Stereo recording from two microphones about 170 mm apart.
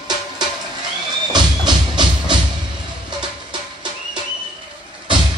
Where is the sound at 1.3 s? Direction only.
25° right (ahead or behind).